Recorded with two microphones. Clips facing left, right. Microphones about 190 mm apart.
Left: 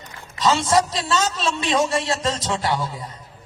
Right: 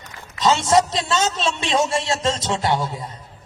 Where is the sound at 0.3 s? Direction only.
25° right (ahead or behind).